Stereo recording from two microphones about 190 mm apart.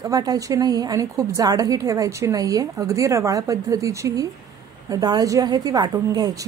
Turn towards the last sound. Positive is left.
turn(degrees=-20)  # may be behind; listen again after turning